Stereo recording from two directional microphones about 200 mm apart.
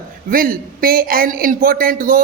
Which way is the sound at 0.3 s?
45° right (ahead or behind).